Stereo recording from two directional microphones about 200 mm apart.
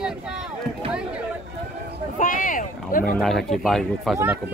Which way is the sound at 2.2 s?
45° left (ahead or behind).